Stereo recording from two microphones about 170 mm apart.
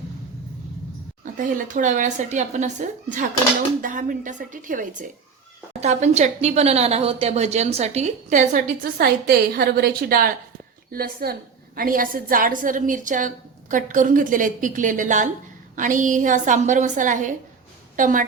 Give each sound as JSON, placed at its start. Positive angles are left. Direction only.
{"t": 1.2, "sound": "a woman's voice", "side_deg": -50}